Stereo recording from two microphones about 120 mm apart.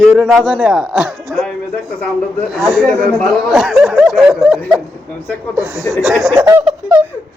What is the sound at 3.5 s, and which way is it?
Speech, 5° right (ahead or behind).